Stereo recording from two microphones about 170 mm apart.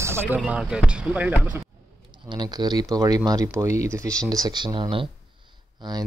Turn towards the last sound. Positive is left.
turn(degrees=-25)  # may be behind; listen again after turning